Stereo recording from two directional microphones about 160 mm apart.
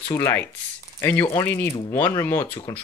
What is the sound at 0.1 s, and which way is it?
Speech, 15° left (ahead or behind).